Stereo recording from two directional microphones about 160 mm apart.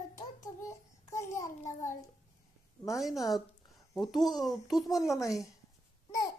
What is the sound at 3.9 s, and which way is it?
A child's voice, centre (ahead or behind).